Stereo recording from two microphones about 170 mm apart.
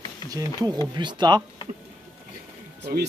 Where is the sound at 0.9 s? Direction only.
25° right (ahead or behind).